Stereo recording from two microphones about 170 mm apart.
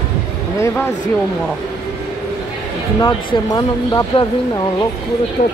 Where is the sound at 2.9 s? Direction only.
20° left (ahead or behind).